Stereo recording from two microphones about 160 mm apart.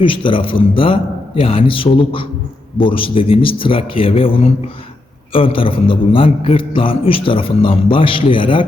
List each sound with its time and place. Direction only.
0.0 s a man's voice: 30° left (ahead or behind)